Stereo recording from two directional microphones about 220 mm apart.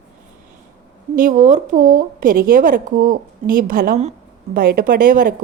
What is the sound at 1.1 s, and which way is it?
A woman's voice, 35° right (ahead or behind).